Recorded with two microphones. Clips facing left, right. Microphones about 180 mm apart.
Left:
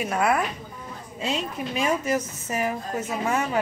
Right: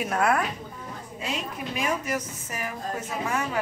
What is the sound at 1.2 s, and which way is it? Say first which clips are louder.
A woman's voice: left 4 dB; 25° left (ahead or behind).